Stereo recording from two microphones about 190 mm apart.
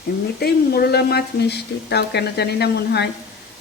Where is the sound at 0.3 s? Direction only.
55° left (ahead or behind).